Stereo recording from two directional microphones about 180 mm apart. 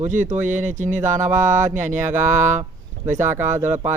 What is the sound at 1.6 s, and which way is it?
Speech, 45° right (ahead or behind).